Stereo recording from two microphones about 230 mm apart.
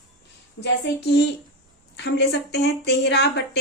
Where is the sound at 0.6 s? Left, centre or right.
Left.